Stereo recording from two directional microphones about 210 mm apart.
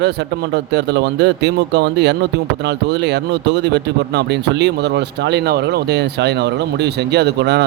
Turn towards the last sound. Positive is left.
turn(degrees=-55)  # may be behind; listen again after turning